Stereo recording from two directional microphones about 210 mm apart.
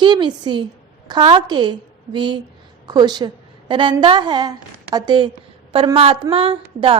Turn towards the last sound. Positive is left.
turn(degrees=-25)  # may be behind; listen again after turning